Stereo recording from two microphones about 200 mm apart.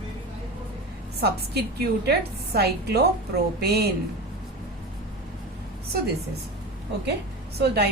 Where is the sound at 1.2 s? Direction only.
55° right (ahead or behind).